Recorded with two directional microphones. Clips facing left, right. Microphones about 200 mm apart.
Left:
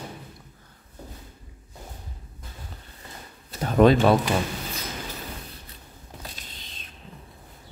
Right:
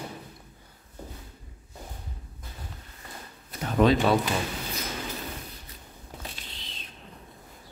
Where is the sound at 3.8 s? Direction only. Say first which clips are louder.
Left 4 dB; 50° left (ahead or behind).